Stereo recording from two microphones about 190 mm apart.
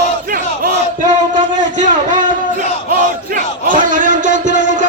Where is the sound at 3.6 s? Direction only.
45° right (ahead or behind).